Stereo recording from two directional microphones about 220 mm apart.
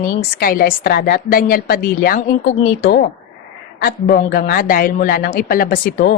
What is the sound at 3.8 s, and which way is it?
A woman's voice, 45° left (ahead or behind).